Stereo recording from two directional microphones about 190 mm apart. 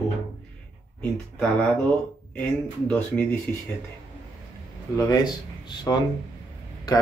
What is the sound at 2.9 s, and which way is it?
Speech, 5° left (ahead or behind).